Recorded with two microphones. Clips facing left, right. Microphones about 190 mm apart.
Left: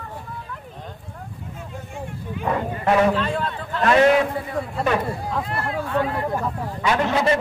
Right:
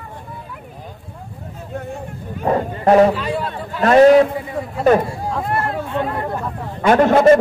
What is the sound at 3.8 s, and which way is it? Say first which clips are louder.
Speech: right 7 dB; 40° right (ahead or behind).